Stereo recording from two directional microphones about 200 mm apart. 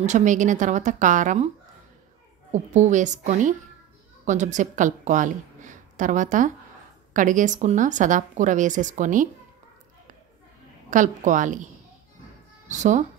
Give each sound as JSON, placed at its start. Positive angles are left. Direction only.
{"t": 0.0, "sound": "a woman's voice", "side_deg": -35}
{"t": 2.5, "sound": "a woman's voice", "side_deg": -35}
{"t": 10.9, "sound": "a woman's voice", "side_deg": -40}